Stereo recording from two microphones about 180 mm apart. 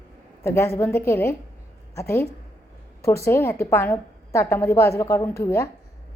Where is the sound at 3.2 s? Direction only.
15° left (ahead or behind).